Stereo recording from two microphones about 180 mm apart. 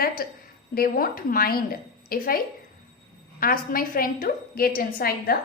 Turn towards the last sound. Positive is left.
turn(degrees=55)  # may be behind; listen again after turning